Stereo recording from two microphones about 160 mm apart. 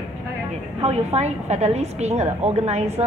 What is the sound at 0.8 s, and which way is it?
A woman's voice, 40° right (ahead or behind).